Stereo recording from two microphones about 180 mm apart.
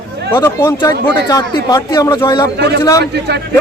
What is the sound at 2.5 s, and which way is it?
Speech, 65° right (ahead or behind).